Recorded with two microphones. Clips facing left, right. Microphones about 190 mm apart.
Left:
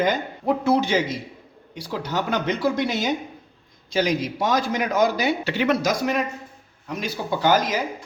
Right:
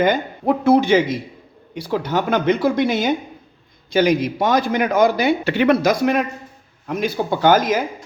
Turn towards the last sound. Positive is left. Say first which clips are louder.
# right 5 dB
turn(degrees=-50)  # may be behind; listen again after turning